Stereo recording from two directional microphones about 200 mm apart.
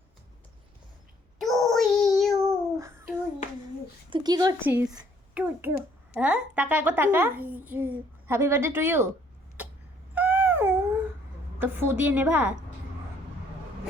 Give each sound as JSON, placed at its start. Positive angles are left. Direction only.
{"t": 1.4, "sound": "child singing", "side_deg": 0}
{"t": 2.3, "sound": "a sound", "side_deg": -15}
{"t": 4.1, "sound": "speech", "side_deg": -20}
{"t": 5.3, "sound": "a child's voice", "side_deg": -10}
{"t": 10.2, "sound": "a sound", "side_deg": -10}
{"t": 11.6, "sound": "a woman's voice", "side_deg": -10}